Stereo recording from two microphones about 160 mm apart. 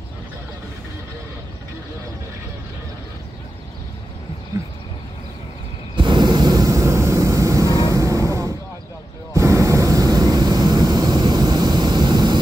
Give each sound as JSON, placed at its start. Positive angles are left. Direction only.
{"t": 5.9, "sound": "vehicle", "side_deg": -30}